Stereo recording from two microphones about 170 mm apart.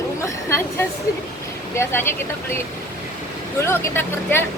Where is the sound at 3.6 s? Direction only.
15° left (ahead or behind).